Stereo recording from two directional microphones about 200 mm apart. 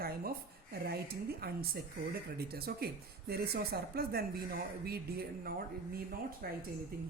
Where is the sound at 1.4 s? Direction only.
50° right (ahead or behind).